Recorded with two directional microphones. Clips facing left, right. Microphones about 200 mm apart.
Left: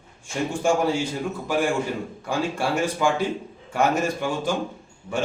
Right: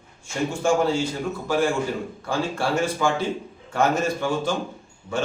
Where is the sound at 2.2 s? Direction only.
15° left (ahead or behind).